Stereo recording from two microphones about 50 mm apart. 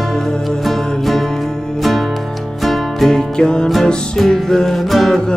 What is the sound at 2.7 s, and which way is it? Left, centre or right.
Music, centre.